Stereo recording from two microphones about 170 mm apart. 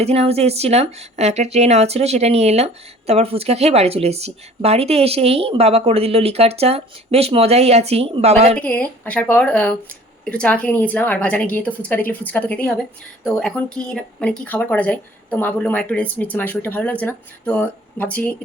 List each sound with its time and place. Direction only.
0.0 s speech: 35° right (ahead or behind)
8.5 s speech: 10° left (ahead or behind)